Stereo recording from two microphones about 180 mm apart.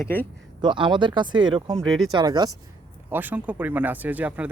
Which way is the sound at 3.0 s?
10° right (ahead or behind).